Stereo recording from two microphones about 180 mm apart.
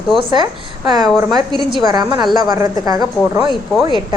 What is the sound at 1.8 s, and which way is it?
A woman's voice, 25° right (ahead or behind).